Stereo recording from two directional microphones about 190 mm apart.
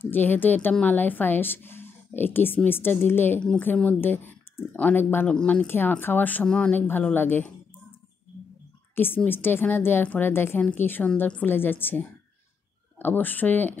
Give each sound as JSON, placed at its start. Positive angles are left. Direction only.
{"t": 0.0, "sound": "a woman's voice", "side_deg": 10}
{"t": 8.9, "sound": "a woman's voice", "side_deg": 10}